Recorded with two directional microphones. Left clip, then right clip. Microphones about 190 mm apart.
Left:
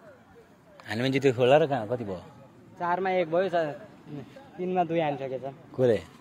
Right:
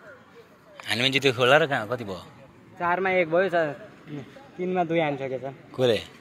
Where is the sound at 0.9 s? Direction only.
25° left (ahead or behind).